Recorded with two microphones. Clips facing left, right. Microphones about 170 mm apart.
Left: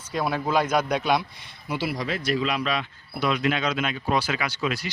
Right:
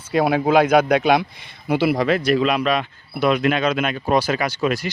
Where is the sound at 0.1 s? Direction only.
70° right (ahead or behind).